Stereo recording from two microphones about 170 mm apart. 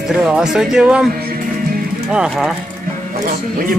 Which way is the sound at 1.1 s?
60° right (ahead or behind).